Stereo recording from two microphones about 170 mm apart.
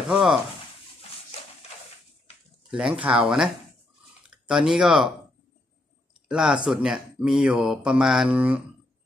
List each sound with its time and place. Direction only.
0.1 s speech: 5° right (ahead or behind)
2.7 s speech: 5° right (ahead or behind)
6.2 s speech: 5° right (ahead or behind)